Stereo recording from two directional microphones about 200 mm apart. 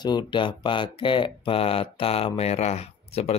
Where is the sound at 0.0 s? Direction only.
20° left (ahead or behind).